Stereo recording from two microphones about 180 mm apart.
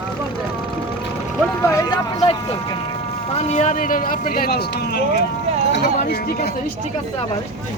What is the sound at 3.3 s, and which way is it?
A man's voice, 40° left (ahead or behind).